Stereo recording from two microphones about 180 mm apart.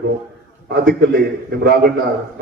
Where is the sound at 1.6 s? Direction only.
65° right (ahead or behind).